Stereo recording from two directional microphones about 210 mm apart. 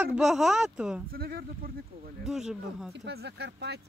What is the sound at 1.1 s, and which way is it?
Speech, 45° right (ahead or behind).